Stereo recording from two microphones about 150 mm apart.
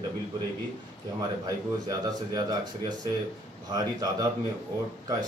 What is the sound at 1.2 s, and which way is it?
Speech, 25° right (ahead or behind).